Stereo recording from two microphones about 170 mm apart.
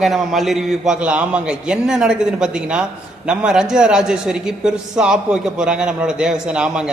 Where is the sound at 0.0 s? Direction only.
Centre (ahead or behind).